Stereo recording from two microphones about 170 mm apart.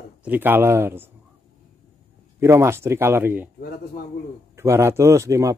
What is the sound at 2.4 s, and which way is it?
Speech, 15° right (ahead or behind).